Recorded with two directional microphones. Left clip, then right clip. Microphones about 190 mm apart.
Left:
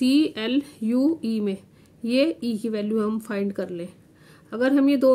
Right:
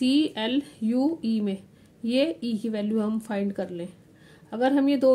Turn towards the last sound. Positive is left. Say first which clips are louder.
# left 2 dB
turn(degrees=25)  # may be behind; listen again after turning